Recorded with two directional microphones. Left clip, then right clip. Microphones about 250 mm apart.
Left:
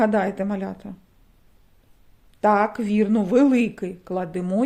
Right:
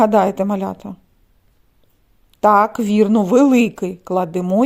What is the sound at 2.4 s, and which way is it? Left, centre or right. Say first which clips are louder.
Speech: right 6 dB; right.